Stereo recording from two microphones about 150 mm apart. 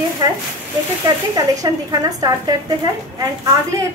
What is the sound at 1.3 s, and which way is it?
Speech, 25° right (ahead or behind).